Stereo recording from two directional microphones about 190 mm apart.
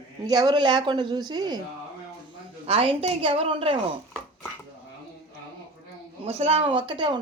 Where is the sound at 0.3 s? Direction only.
20° right (ahead or behind).